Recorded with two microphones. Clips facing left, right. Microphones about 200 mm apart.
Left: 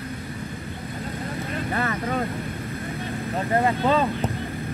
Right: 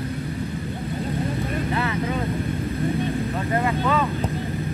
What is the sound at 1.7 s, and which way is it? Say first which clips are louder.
Vehicle: left 1 dB; 50° left (ahead or behind).